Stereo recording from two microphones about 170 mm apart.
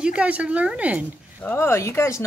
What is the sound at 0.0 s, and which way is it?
Speech, 5° right (ahead or behind).